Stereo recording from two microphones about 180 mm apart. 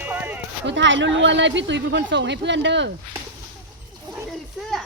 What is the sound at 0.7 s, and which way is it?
Speech, 90° right.